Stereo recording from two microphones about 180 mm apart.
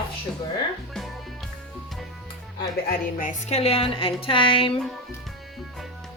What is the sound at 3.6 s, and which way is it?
A woman's voice, 30° left (ahead or behind).